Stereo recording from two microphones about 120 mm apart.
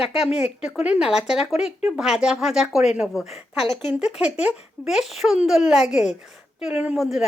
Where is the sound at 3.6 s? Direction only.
55° left (ahead or behind).